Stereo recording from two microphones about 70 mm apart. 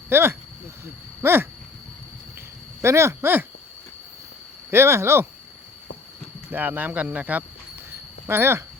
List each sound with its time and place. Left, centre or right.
0.1 s speech: right
2.8 s speech: right
4.7 s speech: right
6.5 s speech: right
7.9 s a sound: right